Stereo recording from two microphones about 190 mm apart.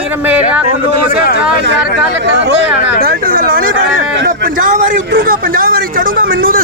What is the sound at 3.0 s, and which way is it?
A man's voice, 50° right (ahead or behind).